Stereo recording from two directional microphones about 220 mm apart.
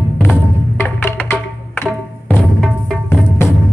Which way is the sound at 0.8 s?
10° left (ahead or behind).